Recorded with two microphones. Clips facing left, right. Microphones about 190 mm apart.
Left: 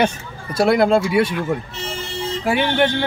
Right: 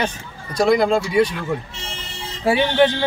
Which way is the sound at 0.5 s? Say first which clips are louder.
Left 1 dB; 5° left (ahead or behind).